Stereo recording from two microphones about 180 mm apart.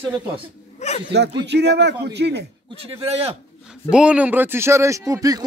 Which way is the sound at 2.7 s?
30° right (ahead or behind).